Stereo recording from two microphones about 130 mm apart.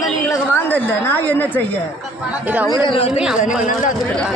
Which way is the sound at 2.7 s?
40° left (ahead or behind).